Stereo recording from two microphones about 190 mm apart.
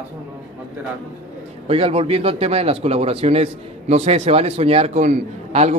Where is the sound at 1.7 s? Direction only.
30° right (ahead or behind).